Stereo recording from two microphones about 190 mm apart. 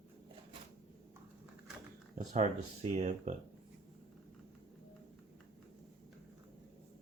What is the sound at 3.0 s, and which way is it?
Speech, 40° right (ahead or behind).